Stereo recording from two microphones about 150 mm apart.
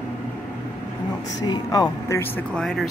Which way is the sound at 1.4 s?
25° left (ahead or behind).